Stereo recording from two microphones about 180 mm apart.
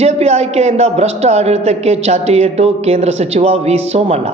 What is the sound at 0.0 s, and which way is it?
A man's voice, 35° right (ahead or behind).